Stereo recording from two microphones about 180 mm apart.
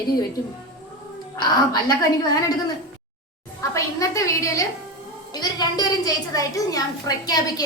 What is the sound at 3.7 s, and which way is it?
A woman's voice, 15° left (ahead or behind).